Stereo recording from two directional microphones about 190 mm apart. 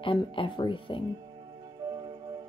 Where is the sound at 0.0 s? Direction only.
25° left (ahead or behind).